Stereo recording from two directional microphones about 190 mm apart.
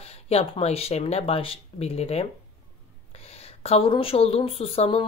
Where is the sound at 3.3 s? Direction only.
30° left (ahead or behind).